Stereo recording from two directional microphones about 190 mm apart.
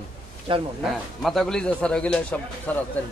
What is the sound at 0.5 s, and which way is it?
Speech, 30° right (ahead or behind).